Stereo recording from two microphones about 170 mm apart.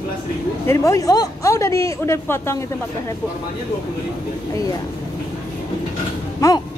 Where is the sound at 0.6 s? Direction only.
20° left (ahead or behind).